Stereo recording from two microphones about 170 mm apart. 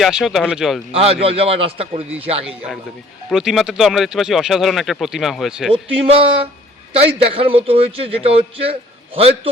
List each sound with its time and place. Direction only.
0.0 s speech: centre (ahead or behind)
0.9 s a man's voice: 35° right (ahead or behind)
3.2 s speech: centre (ahead or behind)
6.0 s a man's voice: 35° right (ahead or behind)